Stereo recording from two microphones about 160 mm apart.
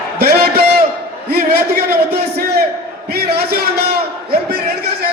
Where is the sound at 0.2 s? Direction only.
75° right (ahead or behind).